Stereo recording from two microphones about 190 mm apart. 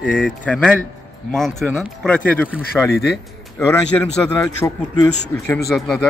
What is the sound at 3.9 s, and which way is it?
A man's voice, 10° left (ahead or behind).